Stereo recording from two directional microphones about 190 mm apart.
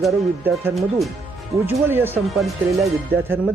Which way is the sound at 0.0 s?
Centre (ahead or behind).